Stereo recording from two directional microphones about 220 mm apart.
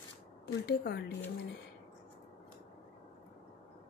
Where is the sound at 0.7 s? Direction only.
45° left (ahead or behind).